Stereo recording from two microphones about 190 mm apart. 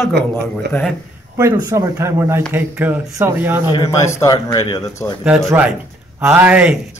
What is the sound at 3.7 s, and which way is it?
A man's voice, 15° left (ahead or behind).